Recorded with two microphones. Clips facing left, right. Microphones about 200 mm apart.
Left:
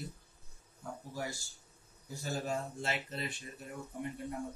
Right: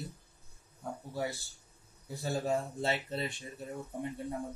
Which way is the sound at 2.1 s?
35° right (ahead or behind).